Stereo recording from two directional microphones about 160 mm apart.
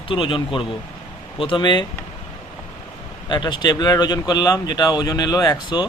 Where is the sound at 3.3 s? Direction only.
30° left (ahead or behind).